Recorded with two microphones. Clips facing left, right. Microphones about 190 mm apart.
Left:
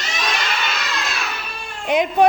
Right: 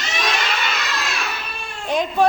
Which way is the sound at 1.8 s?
20° left (ahead or behind).